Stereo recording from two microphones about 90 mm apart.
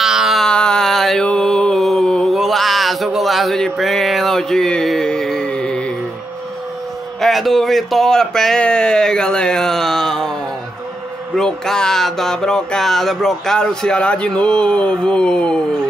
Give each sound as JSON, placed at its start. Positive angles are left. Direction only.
{"t": 0.0, "sound": "a sound", "side_deg": -5}
{"t": 0.5, "sound": "mantra", "side_deg": 10}
{"t": 7.2, "sound": "speech", "side_deg": 0}
{"t": 11.3, "sound": "speech", "side_deg": 5}